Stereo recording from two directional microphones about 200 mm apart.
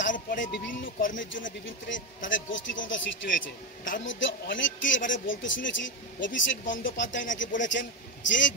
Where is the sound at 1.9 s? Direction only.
70° left (ahead or behind).